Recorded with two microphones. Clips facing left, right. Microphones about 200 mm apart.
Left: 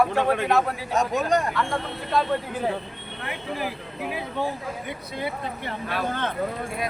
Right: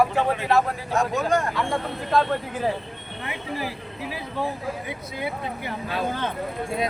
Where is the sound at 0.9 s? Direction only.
20° left (ahead or behind).